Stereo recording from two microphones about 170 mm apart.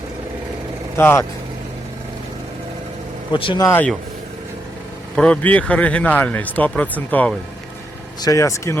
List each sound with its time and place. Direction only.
0.9 s speech: 15° left (ahead or behind)
3.3 s speech: 30° left (ahead or behind)
3.7 s speech: 10° left (ahead or behind)
5.1 s speech: 5° left (ahead or behind)